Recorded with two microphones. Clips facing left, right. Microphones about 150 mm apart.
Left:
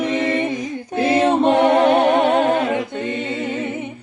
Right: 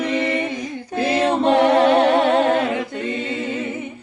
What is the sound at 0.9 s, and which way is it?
A capella, 20° left (ahead or behind).